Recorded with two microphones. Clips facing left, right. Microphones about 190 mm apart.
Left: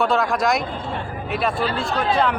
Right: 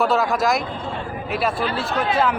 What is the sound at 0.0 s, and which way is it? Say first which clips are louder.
Speech: even; centre (ahead or behind).